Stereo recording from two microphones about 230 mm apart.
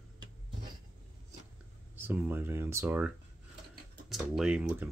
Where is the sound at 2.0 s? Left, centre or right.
Centre.